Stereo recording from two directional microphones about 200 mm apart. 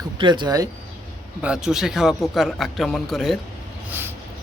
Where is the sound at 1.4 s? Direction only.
5° right (ahead or behind).